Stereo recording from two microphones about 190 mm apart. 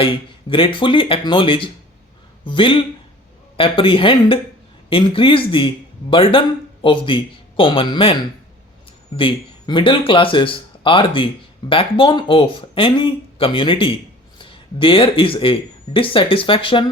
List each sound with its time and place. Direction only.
0.0 s speech: 30° left (ahead or behind)